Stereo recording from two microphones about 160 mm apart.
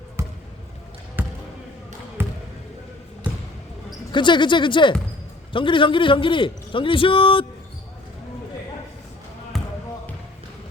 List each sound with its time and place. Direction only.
0.2 s basketball bounce: 15° right (ahead or behind)
4.1 s a man's voice: 30° left (ahead or behind)
9.5 s basketball bounce: centre (ahead or behind)